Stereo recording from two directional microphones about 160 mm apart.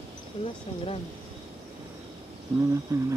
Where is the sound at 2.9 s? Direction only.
15° right (ahead or behind).